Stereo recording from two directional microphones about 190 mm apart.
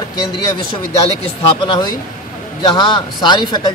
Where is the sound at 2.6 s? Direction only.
25° left (ahead or behind).